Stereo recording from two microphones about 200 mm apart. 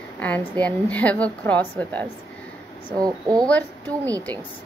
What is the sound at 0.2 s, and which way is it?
A woman's voice, 5° left (ahead or behind).